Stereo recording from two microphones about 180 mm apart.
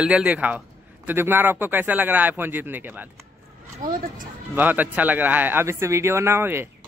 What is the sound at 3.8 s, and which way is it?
Speech, 50° right (ahead or behind).